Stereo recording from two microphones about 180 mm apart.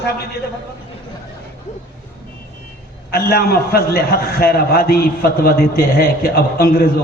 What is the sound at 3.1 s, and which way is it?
A man's voice, 60° left (ahead or behind).